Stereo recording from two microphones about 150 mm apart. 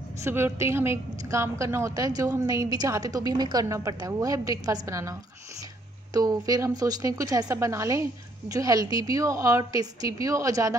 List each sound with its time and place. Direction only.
0.2 s speech: 15° right (ahead or behind)
6.1 s speech: 25° right (ahead or behind)